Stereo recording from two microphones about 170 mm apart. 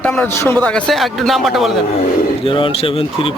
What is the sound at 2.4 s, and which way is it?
Speech, 30° left (ahead or behind).